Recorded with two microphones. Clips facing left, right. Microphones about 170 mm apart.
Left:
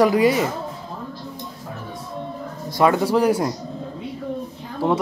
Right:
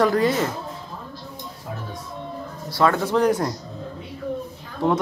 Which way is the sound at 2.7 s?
15° left (ahead or behind).